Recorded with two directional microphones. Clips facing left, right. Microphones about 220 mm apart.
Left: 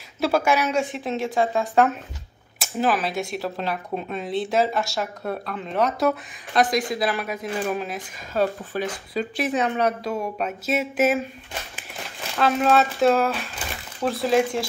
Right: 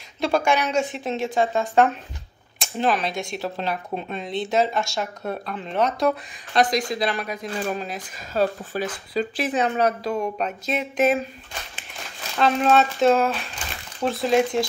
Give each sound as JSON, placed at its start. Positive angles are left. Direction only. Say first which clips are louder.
{"t": 0.2, "sound": "speech", "louder": "even", "side_deg": 5}
{"t": 8.3, "sound": "speech", "louder": "right 1 dB", "side_deg": -35}
{"t": 9.1, "sound": "speech", "louder": "right 1 dB", "side_deg": 0}
{"t": 12.4, "sound": "speech", "louder": "right 1 dB", "side_deg": 0}